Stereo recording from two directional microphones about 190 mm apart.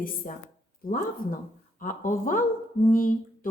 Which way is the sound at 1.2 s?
45° left (ahead or behind).